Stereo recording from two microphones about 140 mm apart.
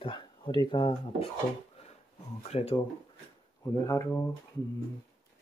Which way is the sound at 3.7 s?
20° left (ahead or behind).